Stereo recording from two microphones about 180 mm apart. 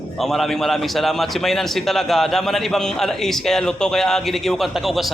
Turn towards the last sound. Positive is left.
turn(degrees=0)  # may be behind; listen again after turning